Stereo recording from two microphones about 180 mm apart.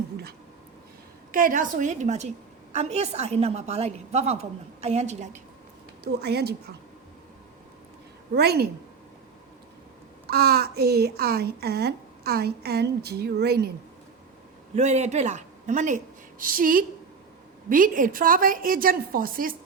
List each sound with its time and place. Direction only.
1.3 s a woman's voice: 50° right (ahead or behind)
6.1 s a woman's voice: 65° right (ahead or behind)
8.3 s a woman's voice: 65° right (ahead or behind)
10.2 s a woman's voice: 60° right (ahead or behind)
14.8 s a woman's voice: 40° right (ahead or behind)